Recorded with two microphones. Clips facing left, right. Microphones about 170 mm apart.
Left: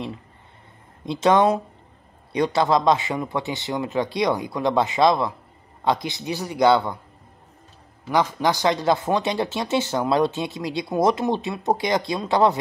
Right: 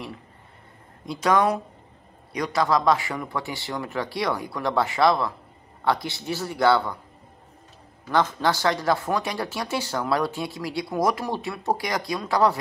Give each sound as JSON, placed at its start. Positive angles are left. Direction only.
{"t": 1.0, "sound": "a man's voice", "side_deg": 25}
{"t": 8.1, "sound": "speech", "side_deg": 15}